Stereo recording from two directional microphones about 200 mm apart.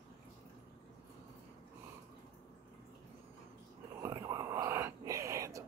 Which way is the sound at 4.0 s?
20° right (ahead or behind).